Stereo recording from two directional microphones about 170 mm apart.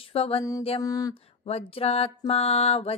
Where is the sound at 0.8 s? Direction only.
20° left (ahead or behind).